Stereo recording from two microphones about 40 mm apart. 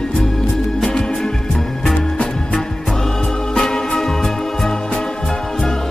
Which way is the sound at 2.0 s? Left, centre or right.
Left.